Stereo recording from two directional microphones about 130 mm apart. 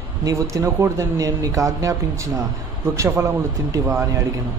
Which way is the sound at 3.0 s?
25° right (ahead or behind).